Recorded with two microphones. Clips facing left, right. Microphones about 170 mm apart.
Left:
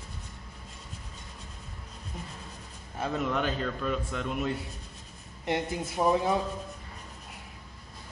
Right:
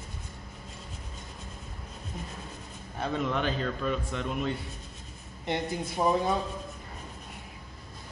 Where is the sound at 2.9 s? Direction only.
5° left (ahead or behind).